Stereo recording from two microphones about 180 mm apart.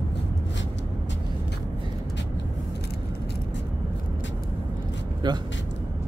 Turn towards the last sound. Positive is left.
turn(degrees=-25)  # may be behind; listen again after turning